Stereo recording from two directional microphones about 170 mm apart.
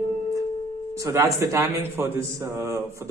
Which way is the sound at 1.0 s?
15° right (ahead or behind).